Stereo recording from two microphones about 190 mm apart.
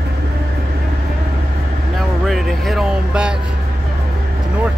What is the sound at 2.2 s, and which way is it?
Speech, centre (ahead or behind).